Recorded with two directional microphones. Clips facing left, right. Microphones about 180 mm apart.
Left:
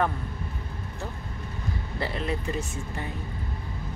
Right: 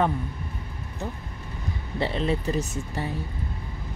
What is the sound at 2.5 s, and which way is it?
Speech, 35° right (ahead or behind).